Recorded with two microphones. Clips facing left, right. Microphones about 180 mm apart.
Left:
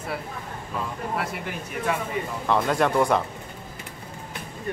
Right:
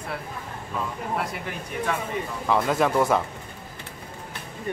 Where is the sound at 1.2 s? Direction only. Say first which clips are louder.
Even; centre (ahead or behind).